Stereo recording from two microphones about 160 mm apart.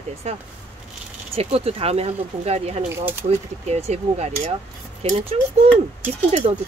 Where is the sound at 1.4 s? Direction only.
40° right (ahead or behind).